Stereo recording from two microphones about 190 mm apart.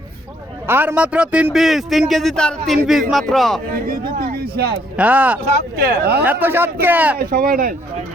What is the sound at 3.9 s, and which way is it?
Speech, 50° right (ahead or behind).